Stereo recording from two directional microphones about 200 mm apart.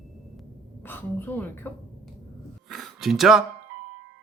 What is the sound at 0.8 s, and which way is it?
Speech, 10° left (ahead or behind).